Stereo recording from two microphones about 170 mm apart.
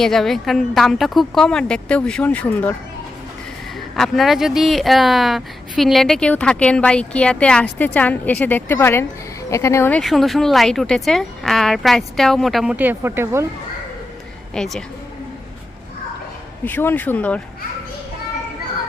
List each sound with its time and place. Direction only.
0.0 s speech: centre (ahead or behind)
3.9 s a woman's voice: centre (ahead or behind)
10.0 s speech: centre (ahead or behind)
14.5 s speech: 5° left (ahead or behind)
16.6 s a woman's voice: 10° left (ahead or behind)